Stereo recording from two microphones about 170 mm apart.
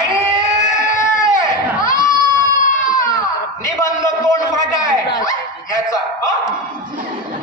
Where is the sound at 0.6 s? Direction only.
45° left (ahead or behind).